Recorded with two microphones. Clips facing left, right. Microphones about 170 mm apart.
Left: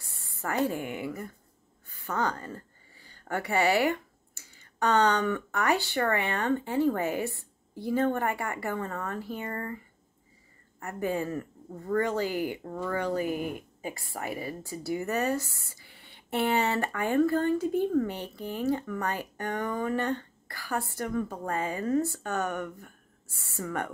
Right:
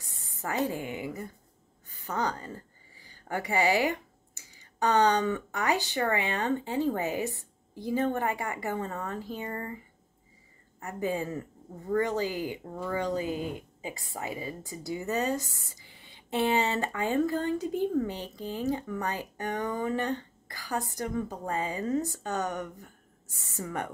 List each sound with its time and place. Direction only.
0.0 s a woman's voice: 20° right (ahead or behind)
10.8 s speech: 20° right (ahead or behind)